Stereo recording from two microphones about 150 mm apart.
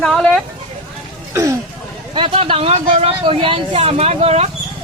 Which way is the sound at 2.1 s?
40° right (ahead or behind).